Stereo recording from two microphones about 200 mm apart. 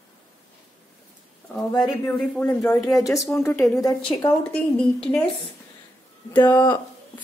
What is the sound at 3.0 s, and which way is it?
A woman's voice, 15° left (ahead or behind).